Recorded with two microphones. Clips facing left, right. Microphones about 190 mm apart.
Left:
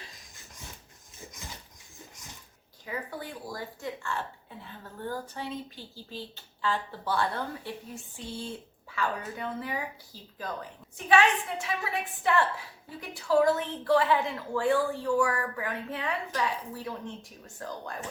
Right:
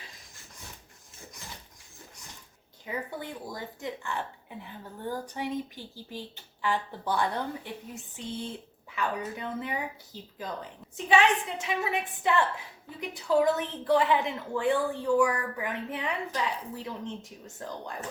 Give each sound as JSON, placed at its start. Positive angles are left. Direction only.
{"t": 2.8, "sound": "speech", "side_deg": -20}